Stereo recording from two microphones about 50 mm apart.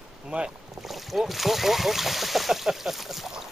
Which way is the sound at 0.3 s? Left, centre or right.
Right.